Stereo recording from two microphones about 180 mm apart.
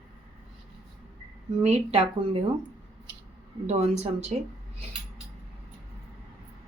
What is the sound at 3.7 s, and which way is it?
Speech, 35° right (ahead or behind).